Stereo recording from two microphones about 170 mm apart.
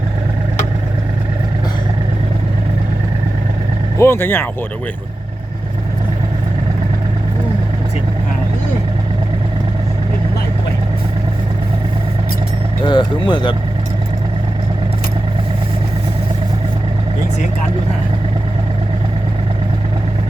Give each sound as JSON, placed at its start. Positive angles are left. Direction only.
{"t": 3.9, "sound": "speech", "side_deg": 15}
{"t": 12.8, "sound": "speech", "side_deg": 25}